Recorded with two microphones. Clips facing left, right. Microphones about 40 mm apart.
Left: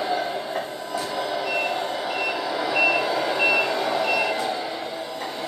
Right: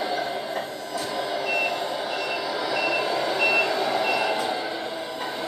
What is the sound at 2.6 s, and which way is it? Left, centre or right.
Reversing beeps, left.